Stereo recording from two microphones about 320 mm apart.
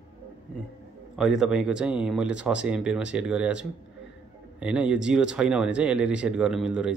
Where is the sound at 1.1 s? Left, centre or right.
Centre.